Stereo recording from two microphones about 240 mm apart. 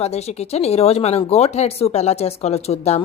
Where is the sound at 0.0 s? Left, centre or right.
Left.